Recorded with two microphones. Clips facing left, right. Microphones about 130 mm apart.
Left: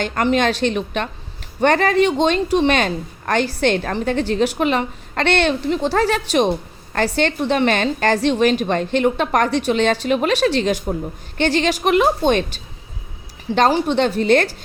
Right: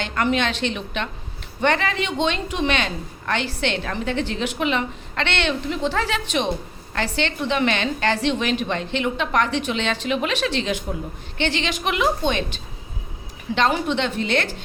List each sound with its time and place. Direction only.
0.0 s a woman's voice: 40° left (ahead or behind)
13.6 s a woman's voice: 35° left (ahead or behind)